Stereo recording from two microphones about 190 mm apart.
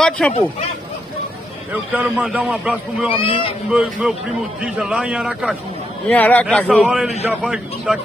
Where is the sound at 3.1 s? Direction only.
30° left (ahead or behind).